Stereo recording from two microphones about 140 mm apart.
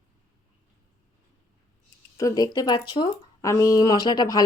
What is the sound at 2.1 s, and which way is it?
Speech, 25° left (ahead or behind).